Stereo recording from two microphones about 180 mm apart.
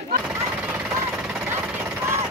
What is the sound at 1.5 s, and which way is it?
Jackhammer, 10° right (ahead or behind).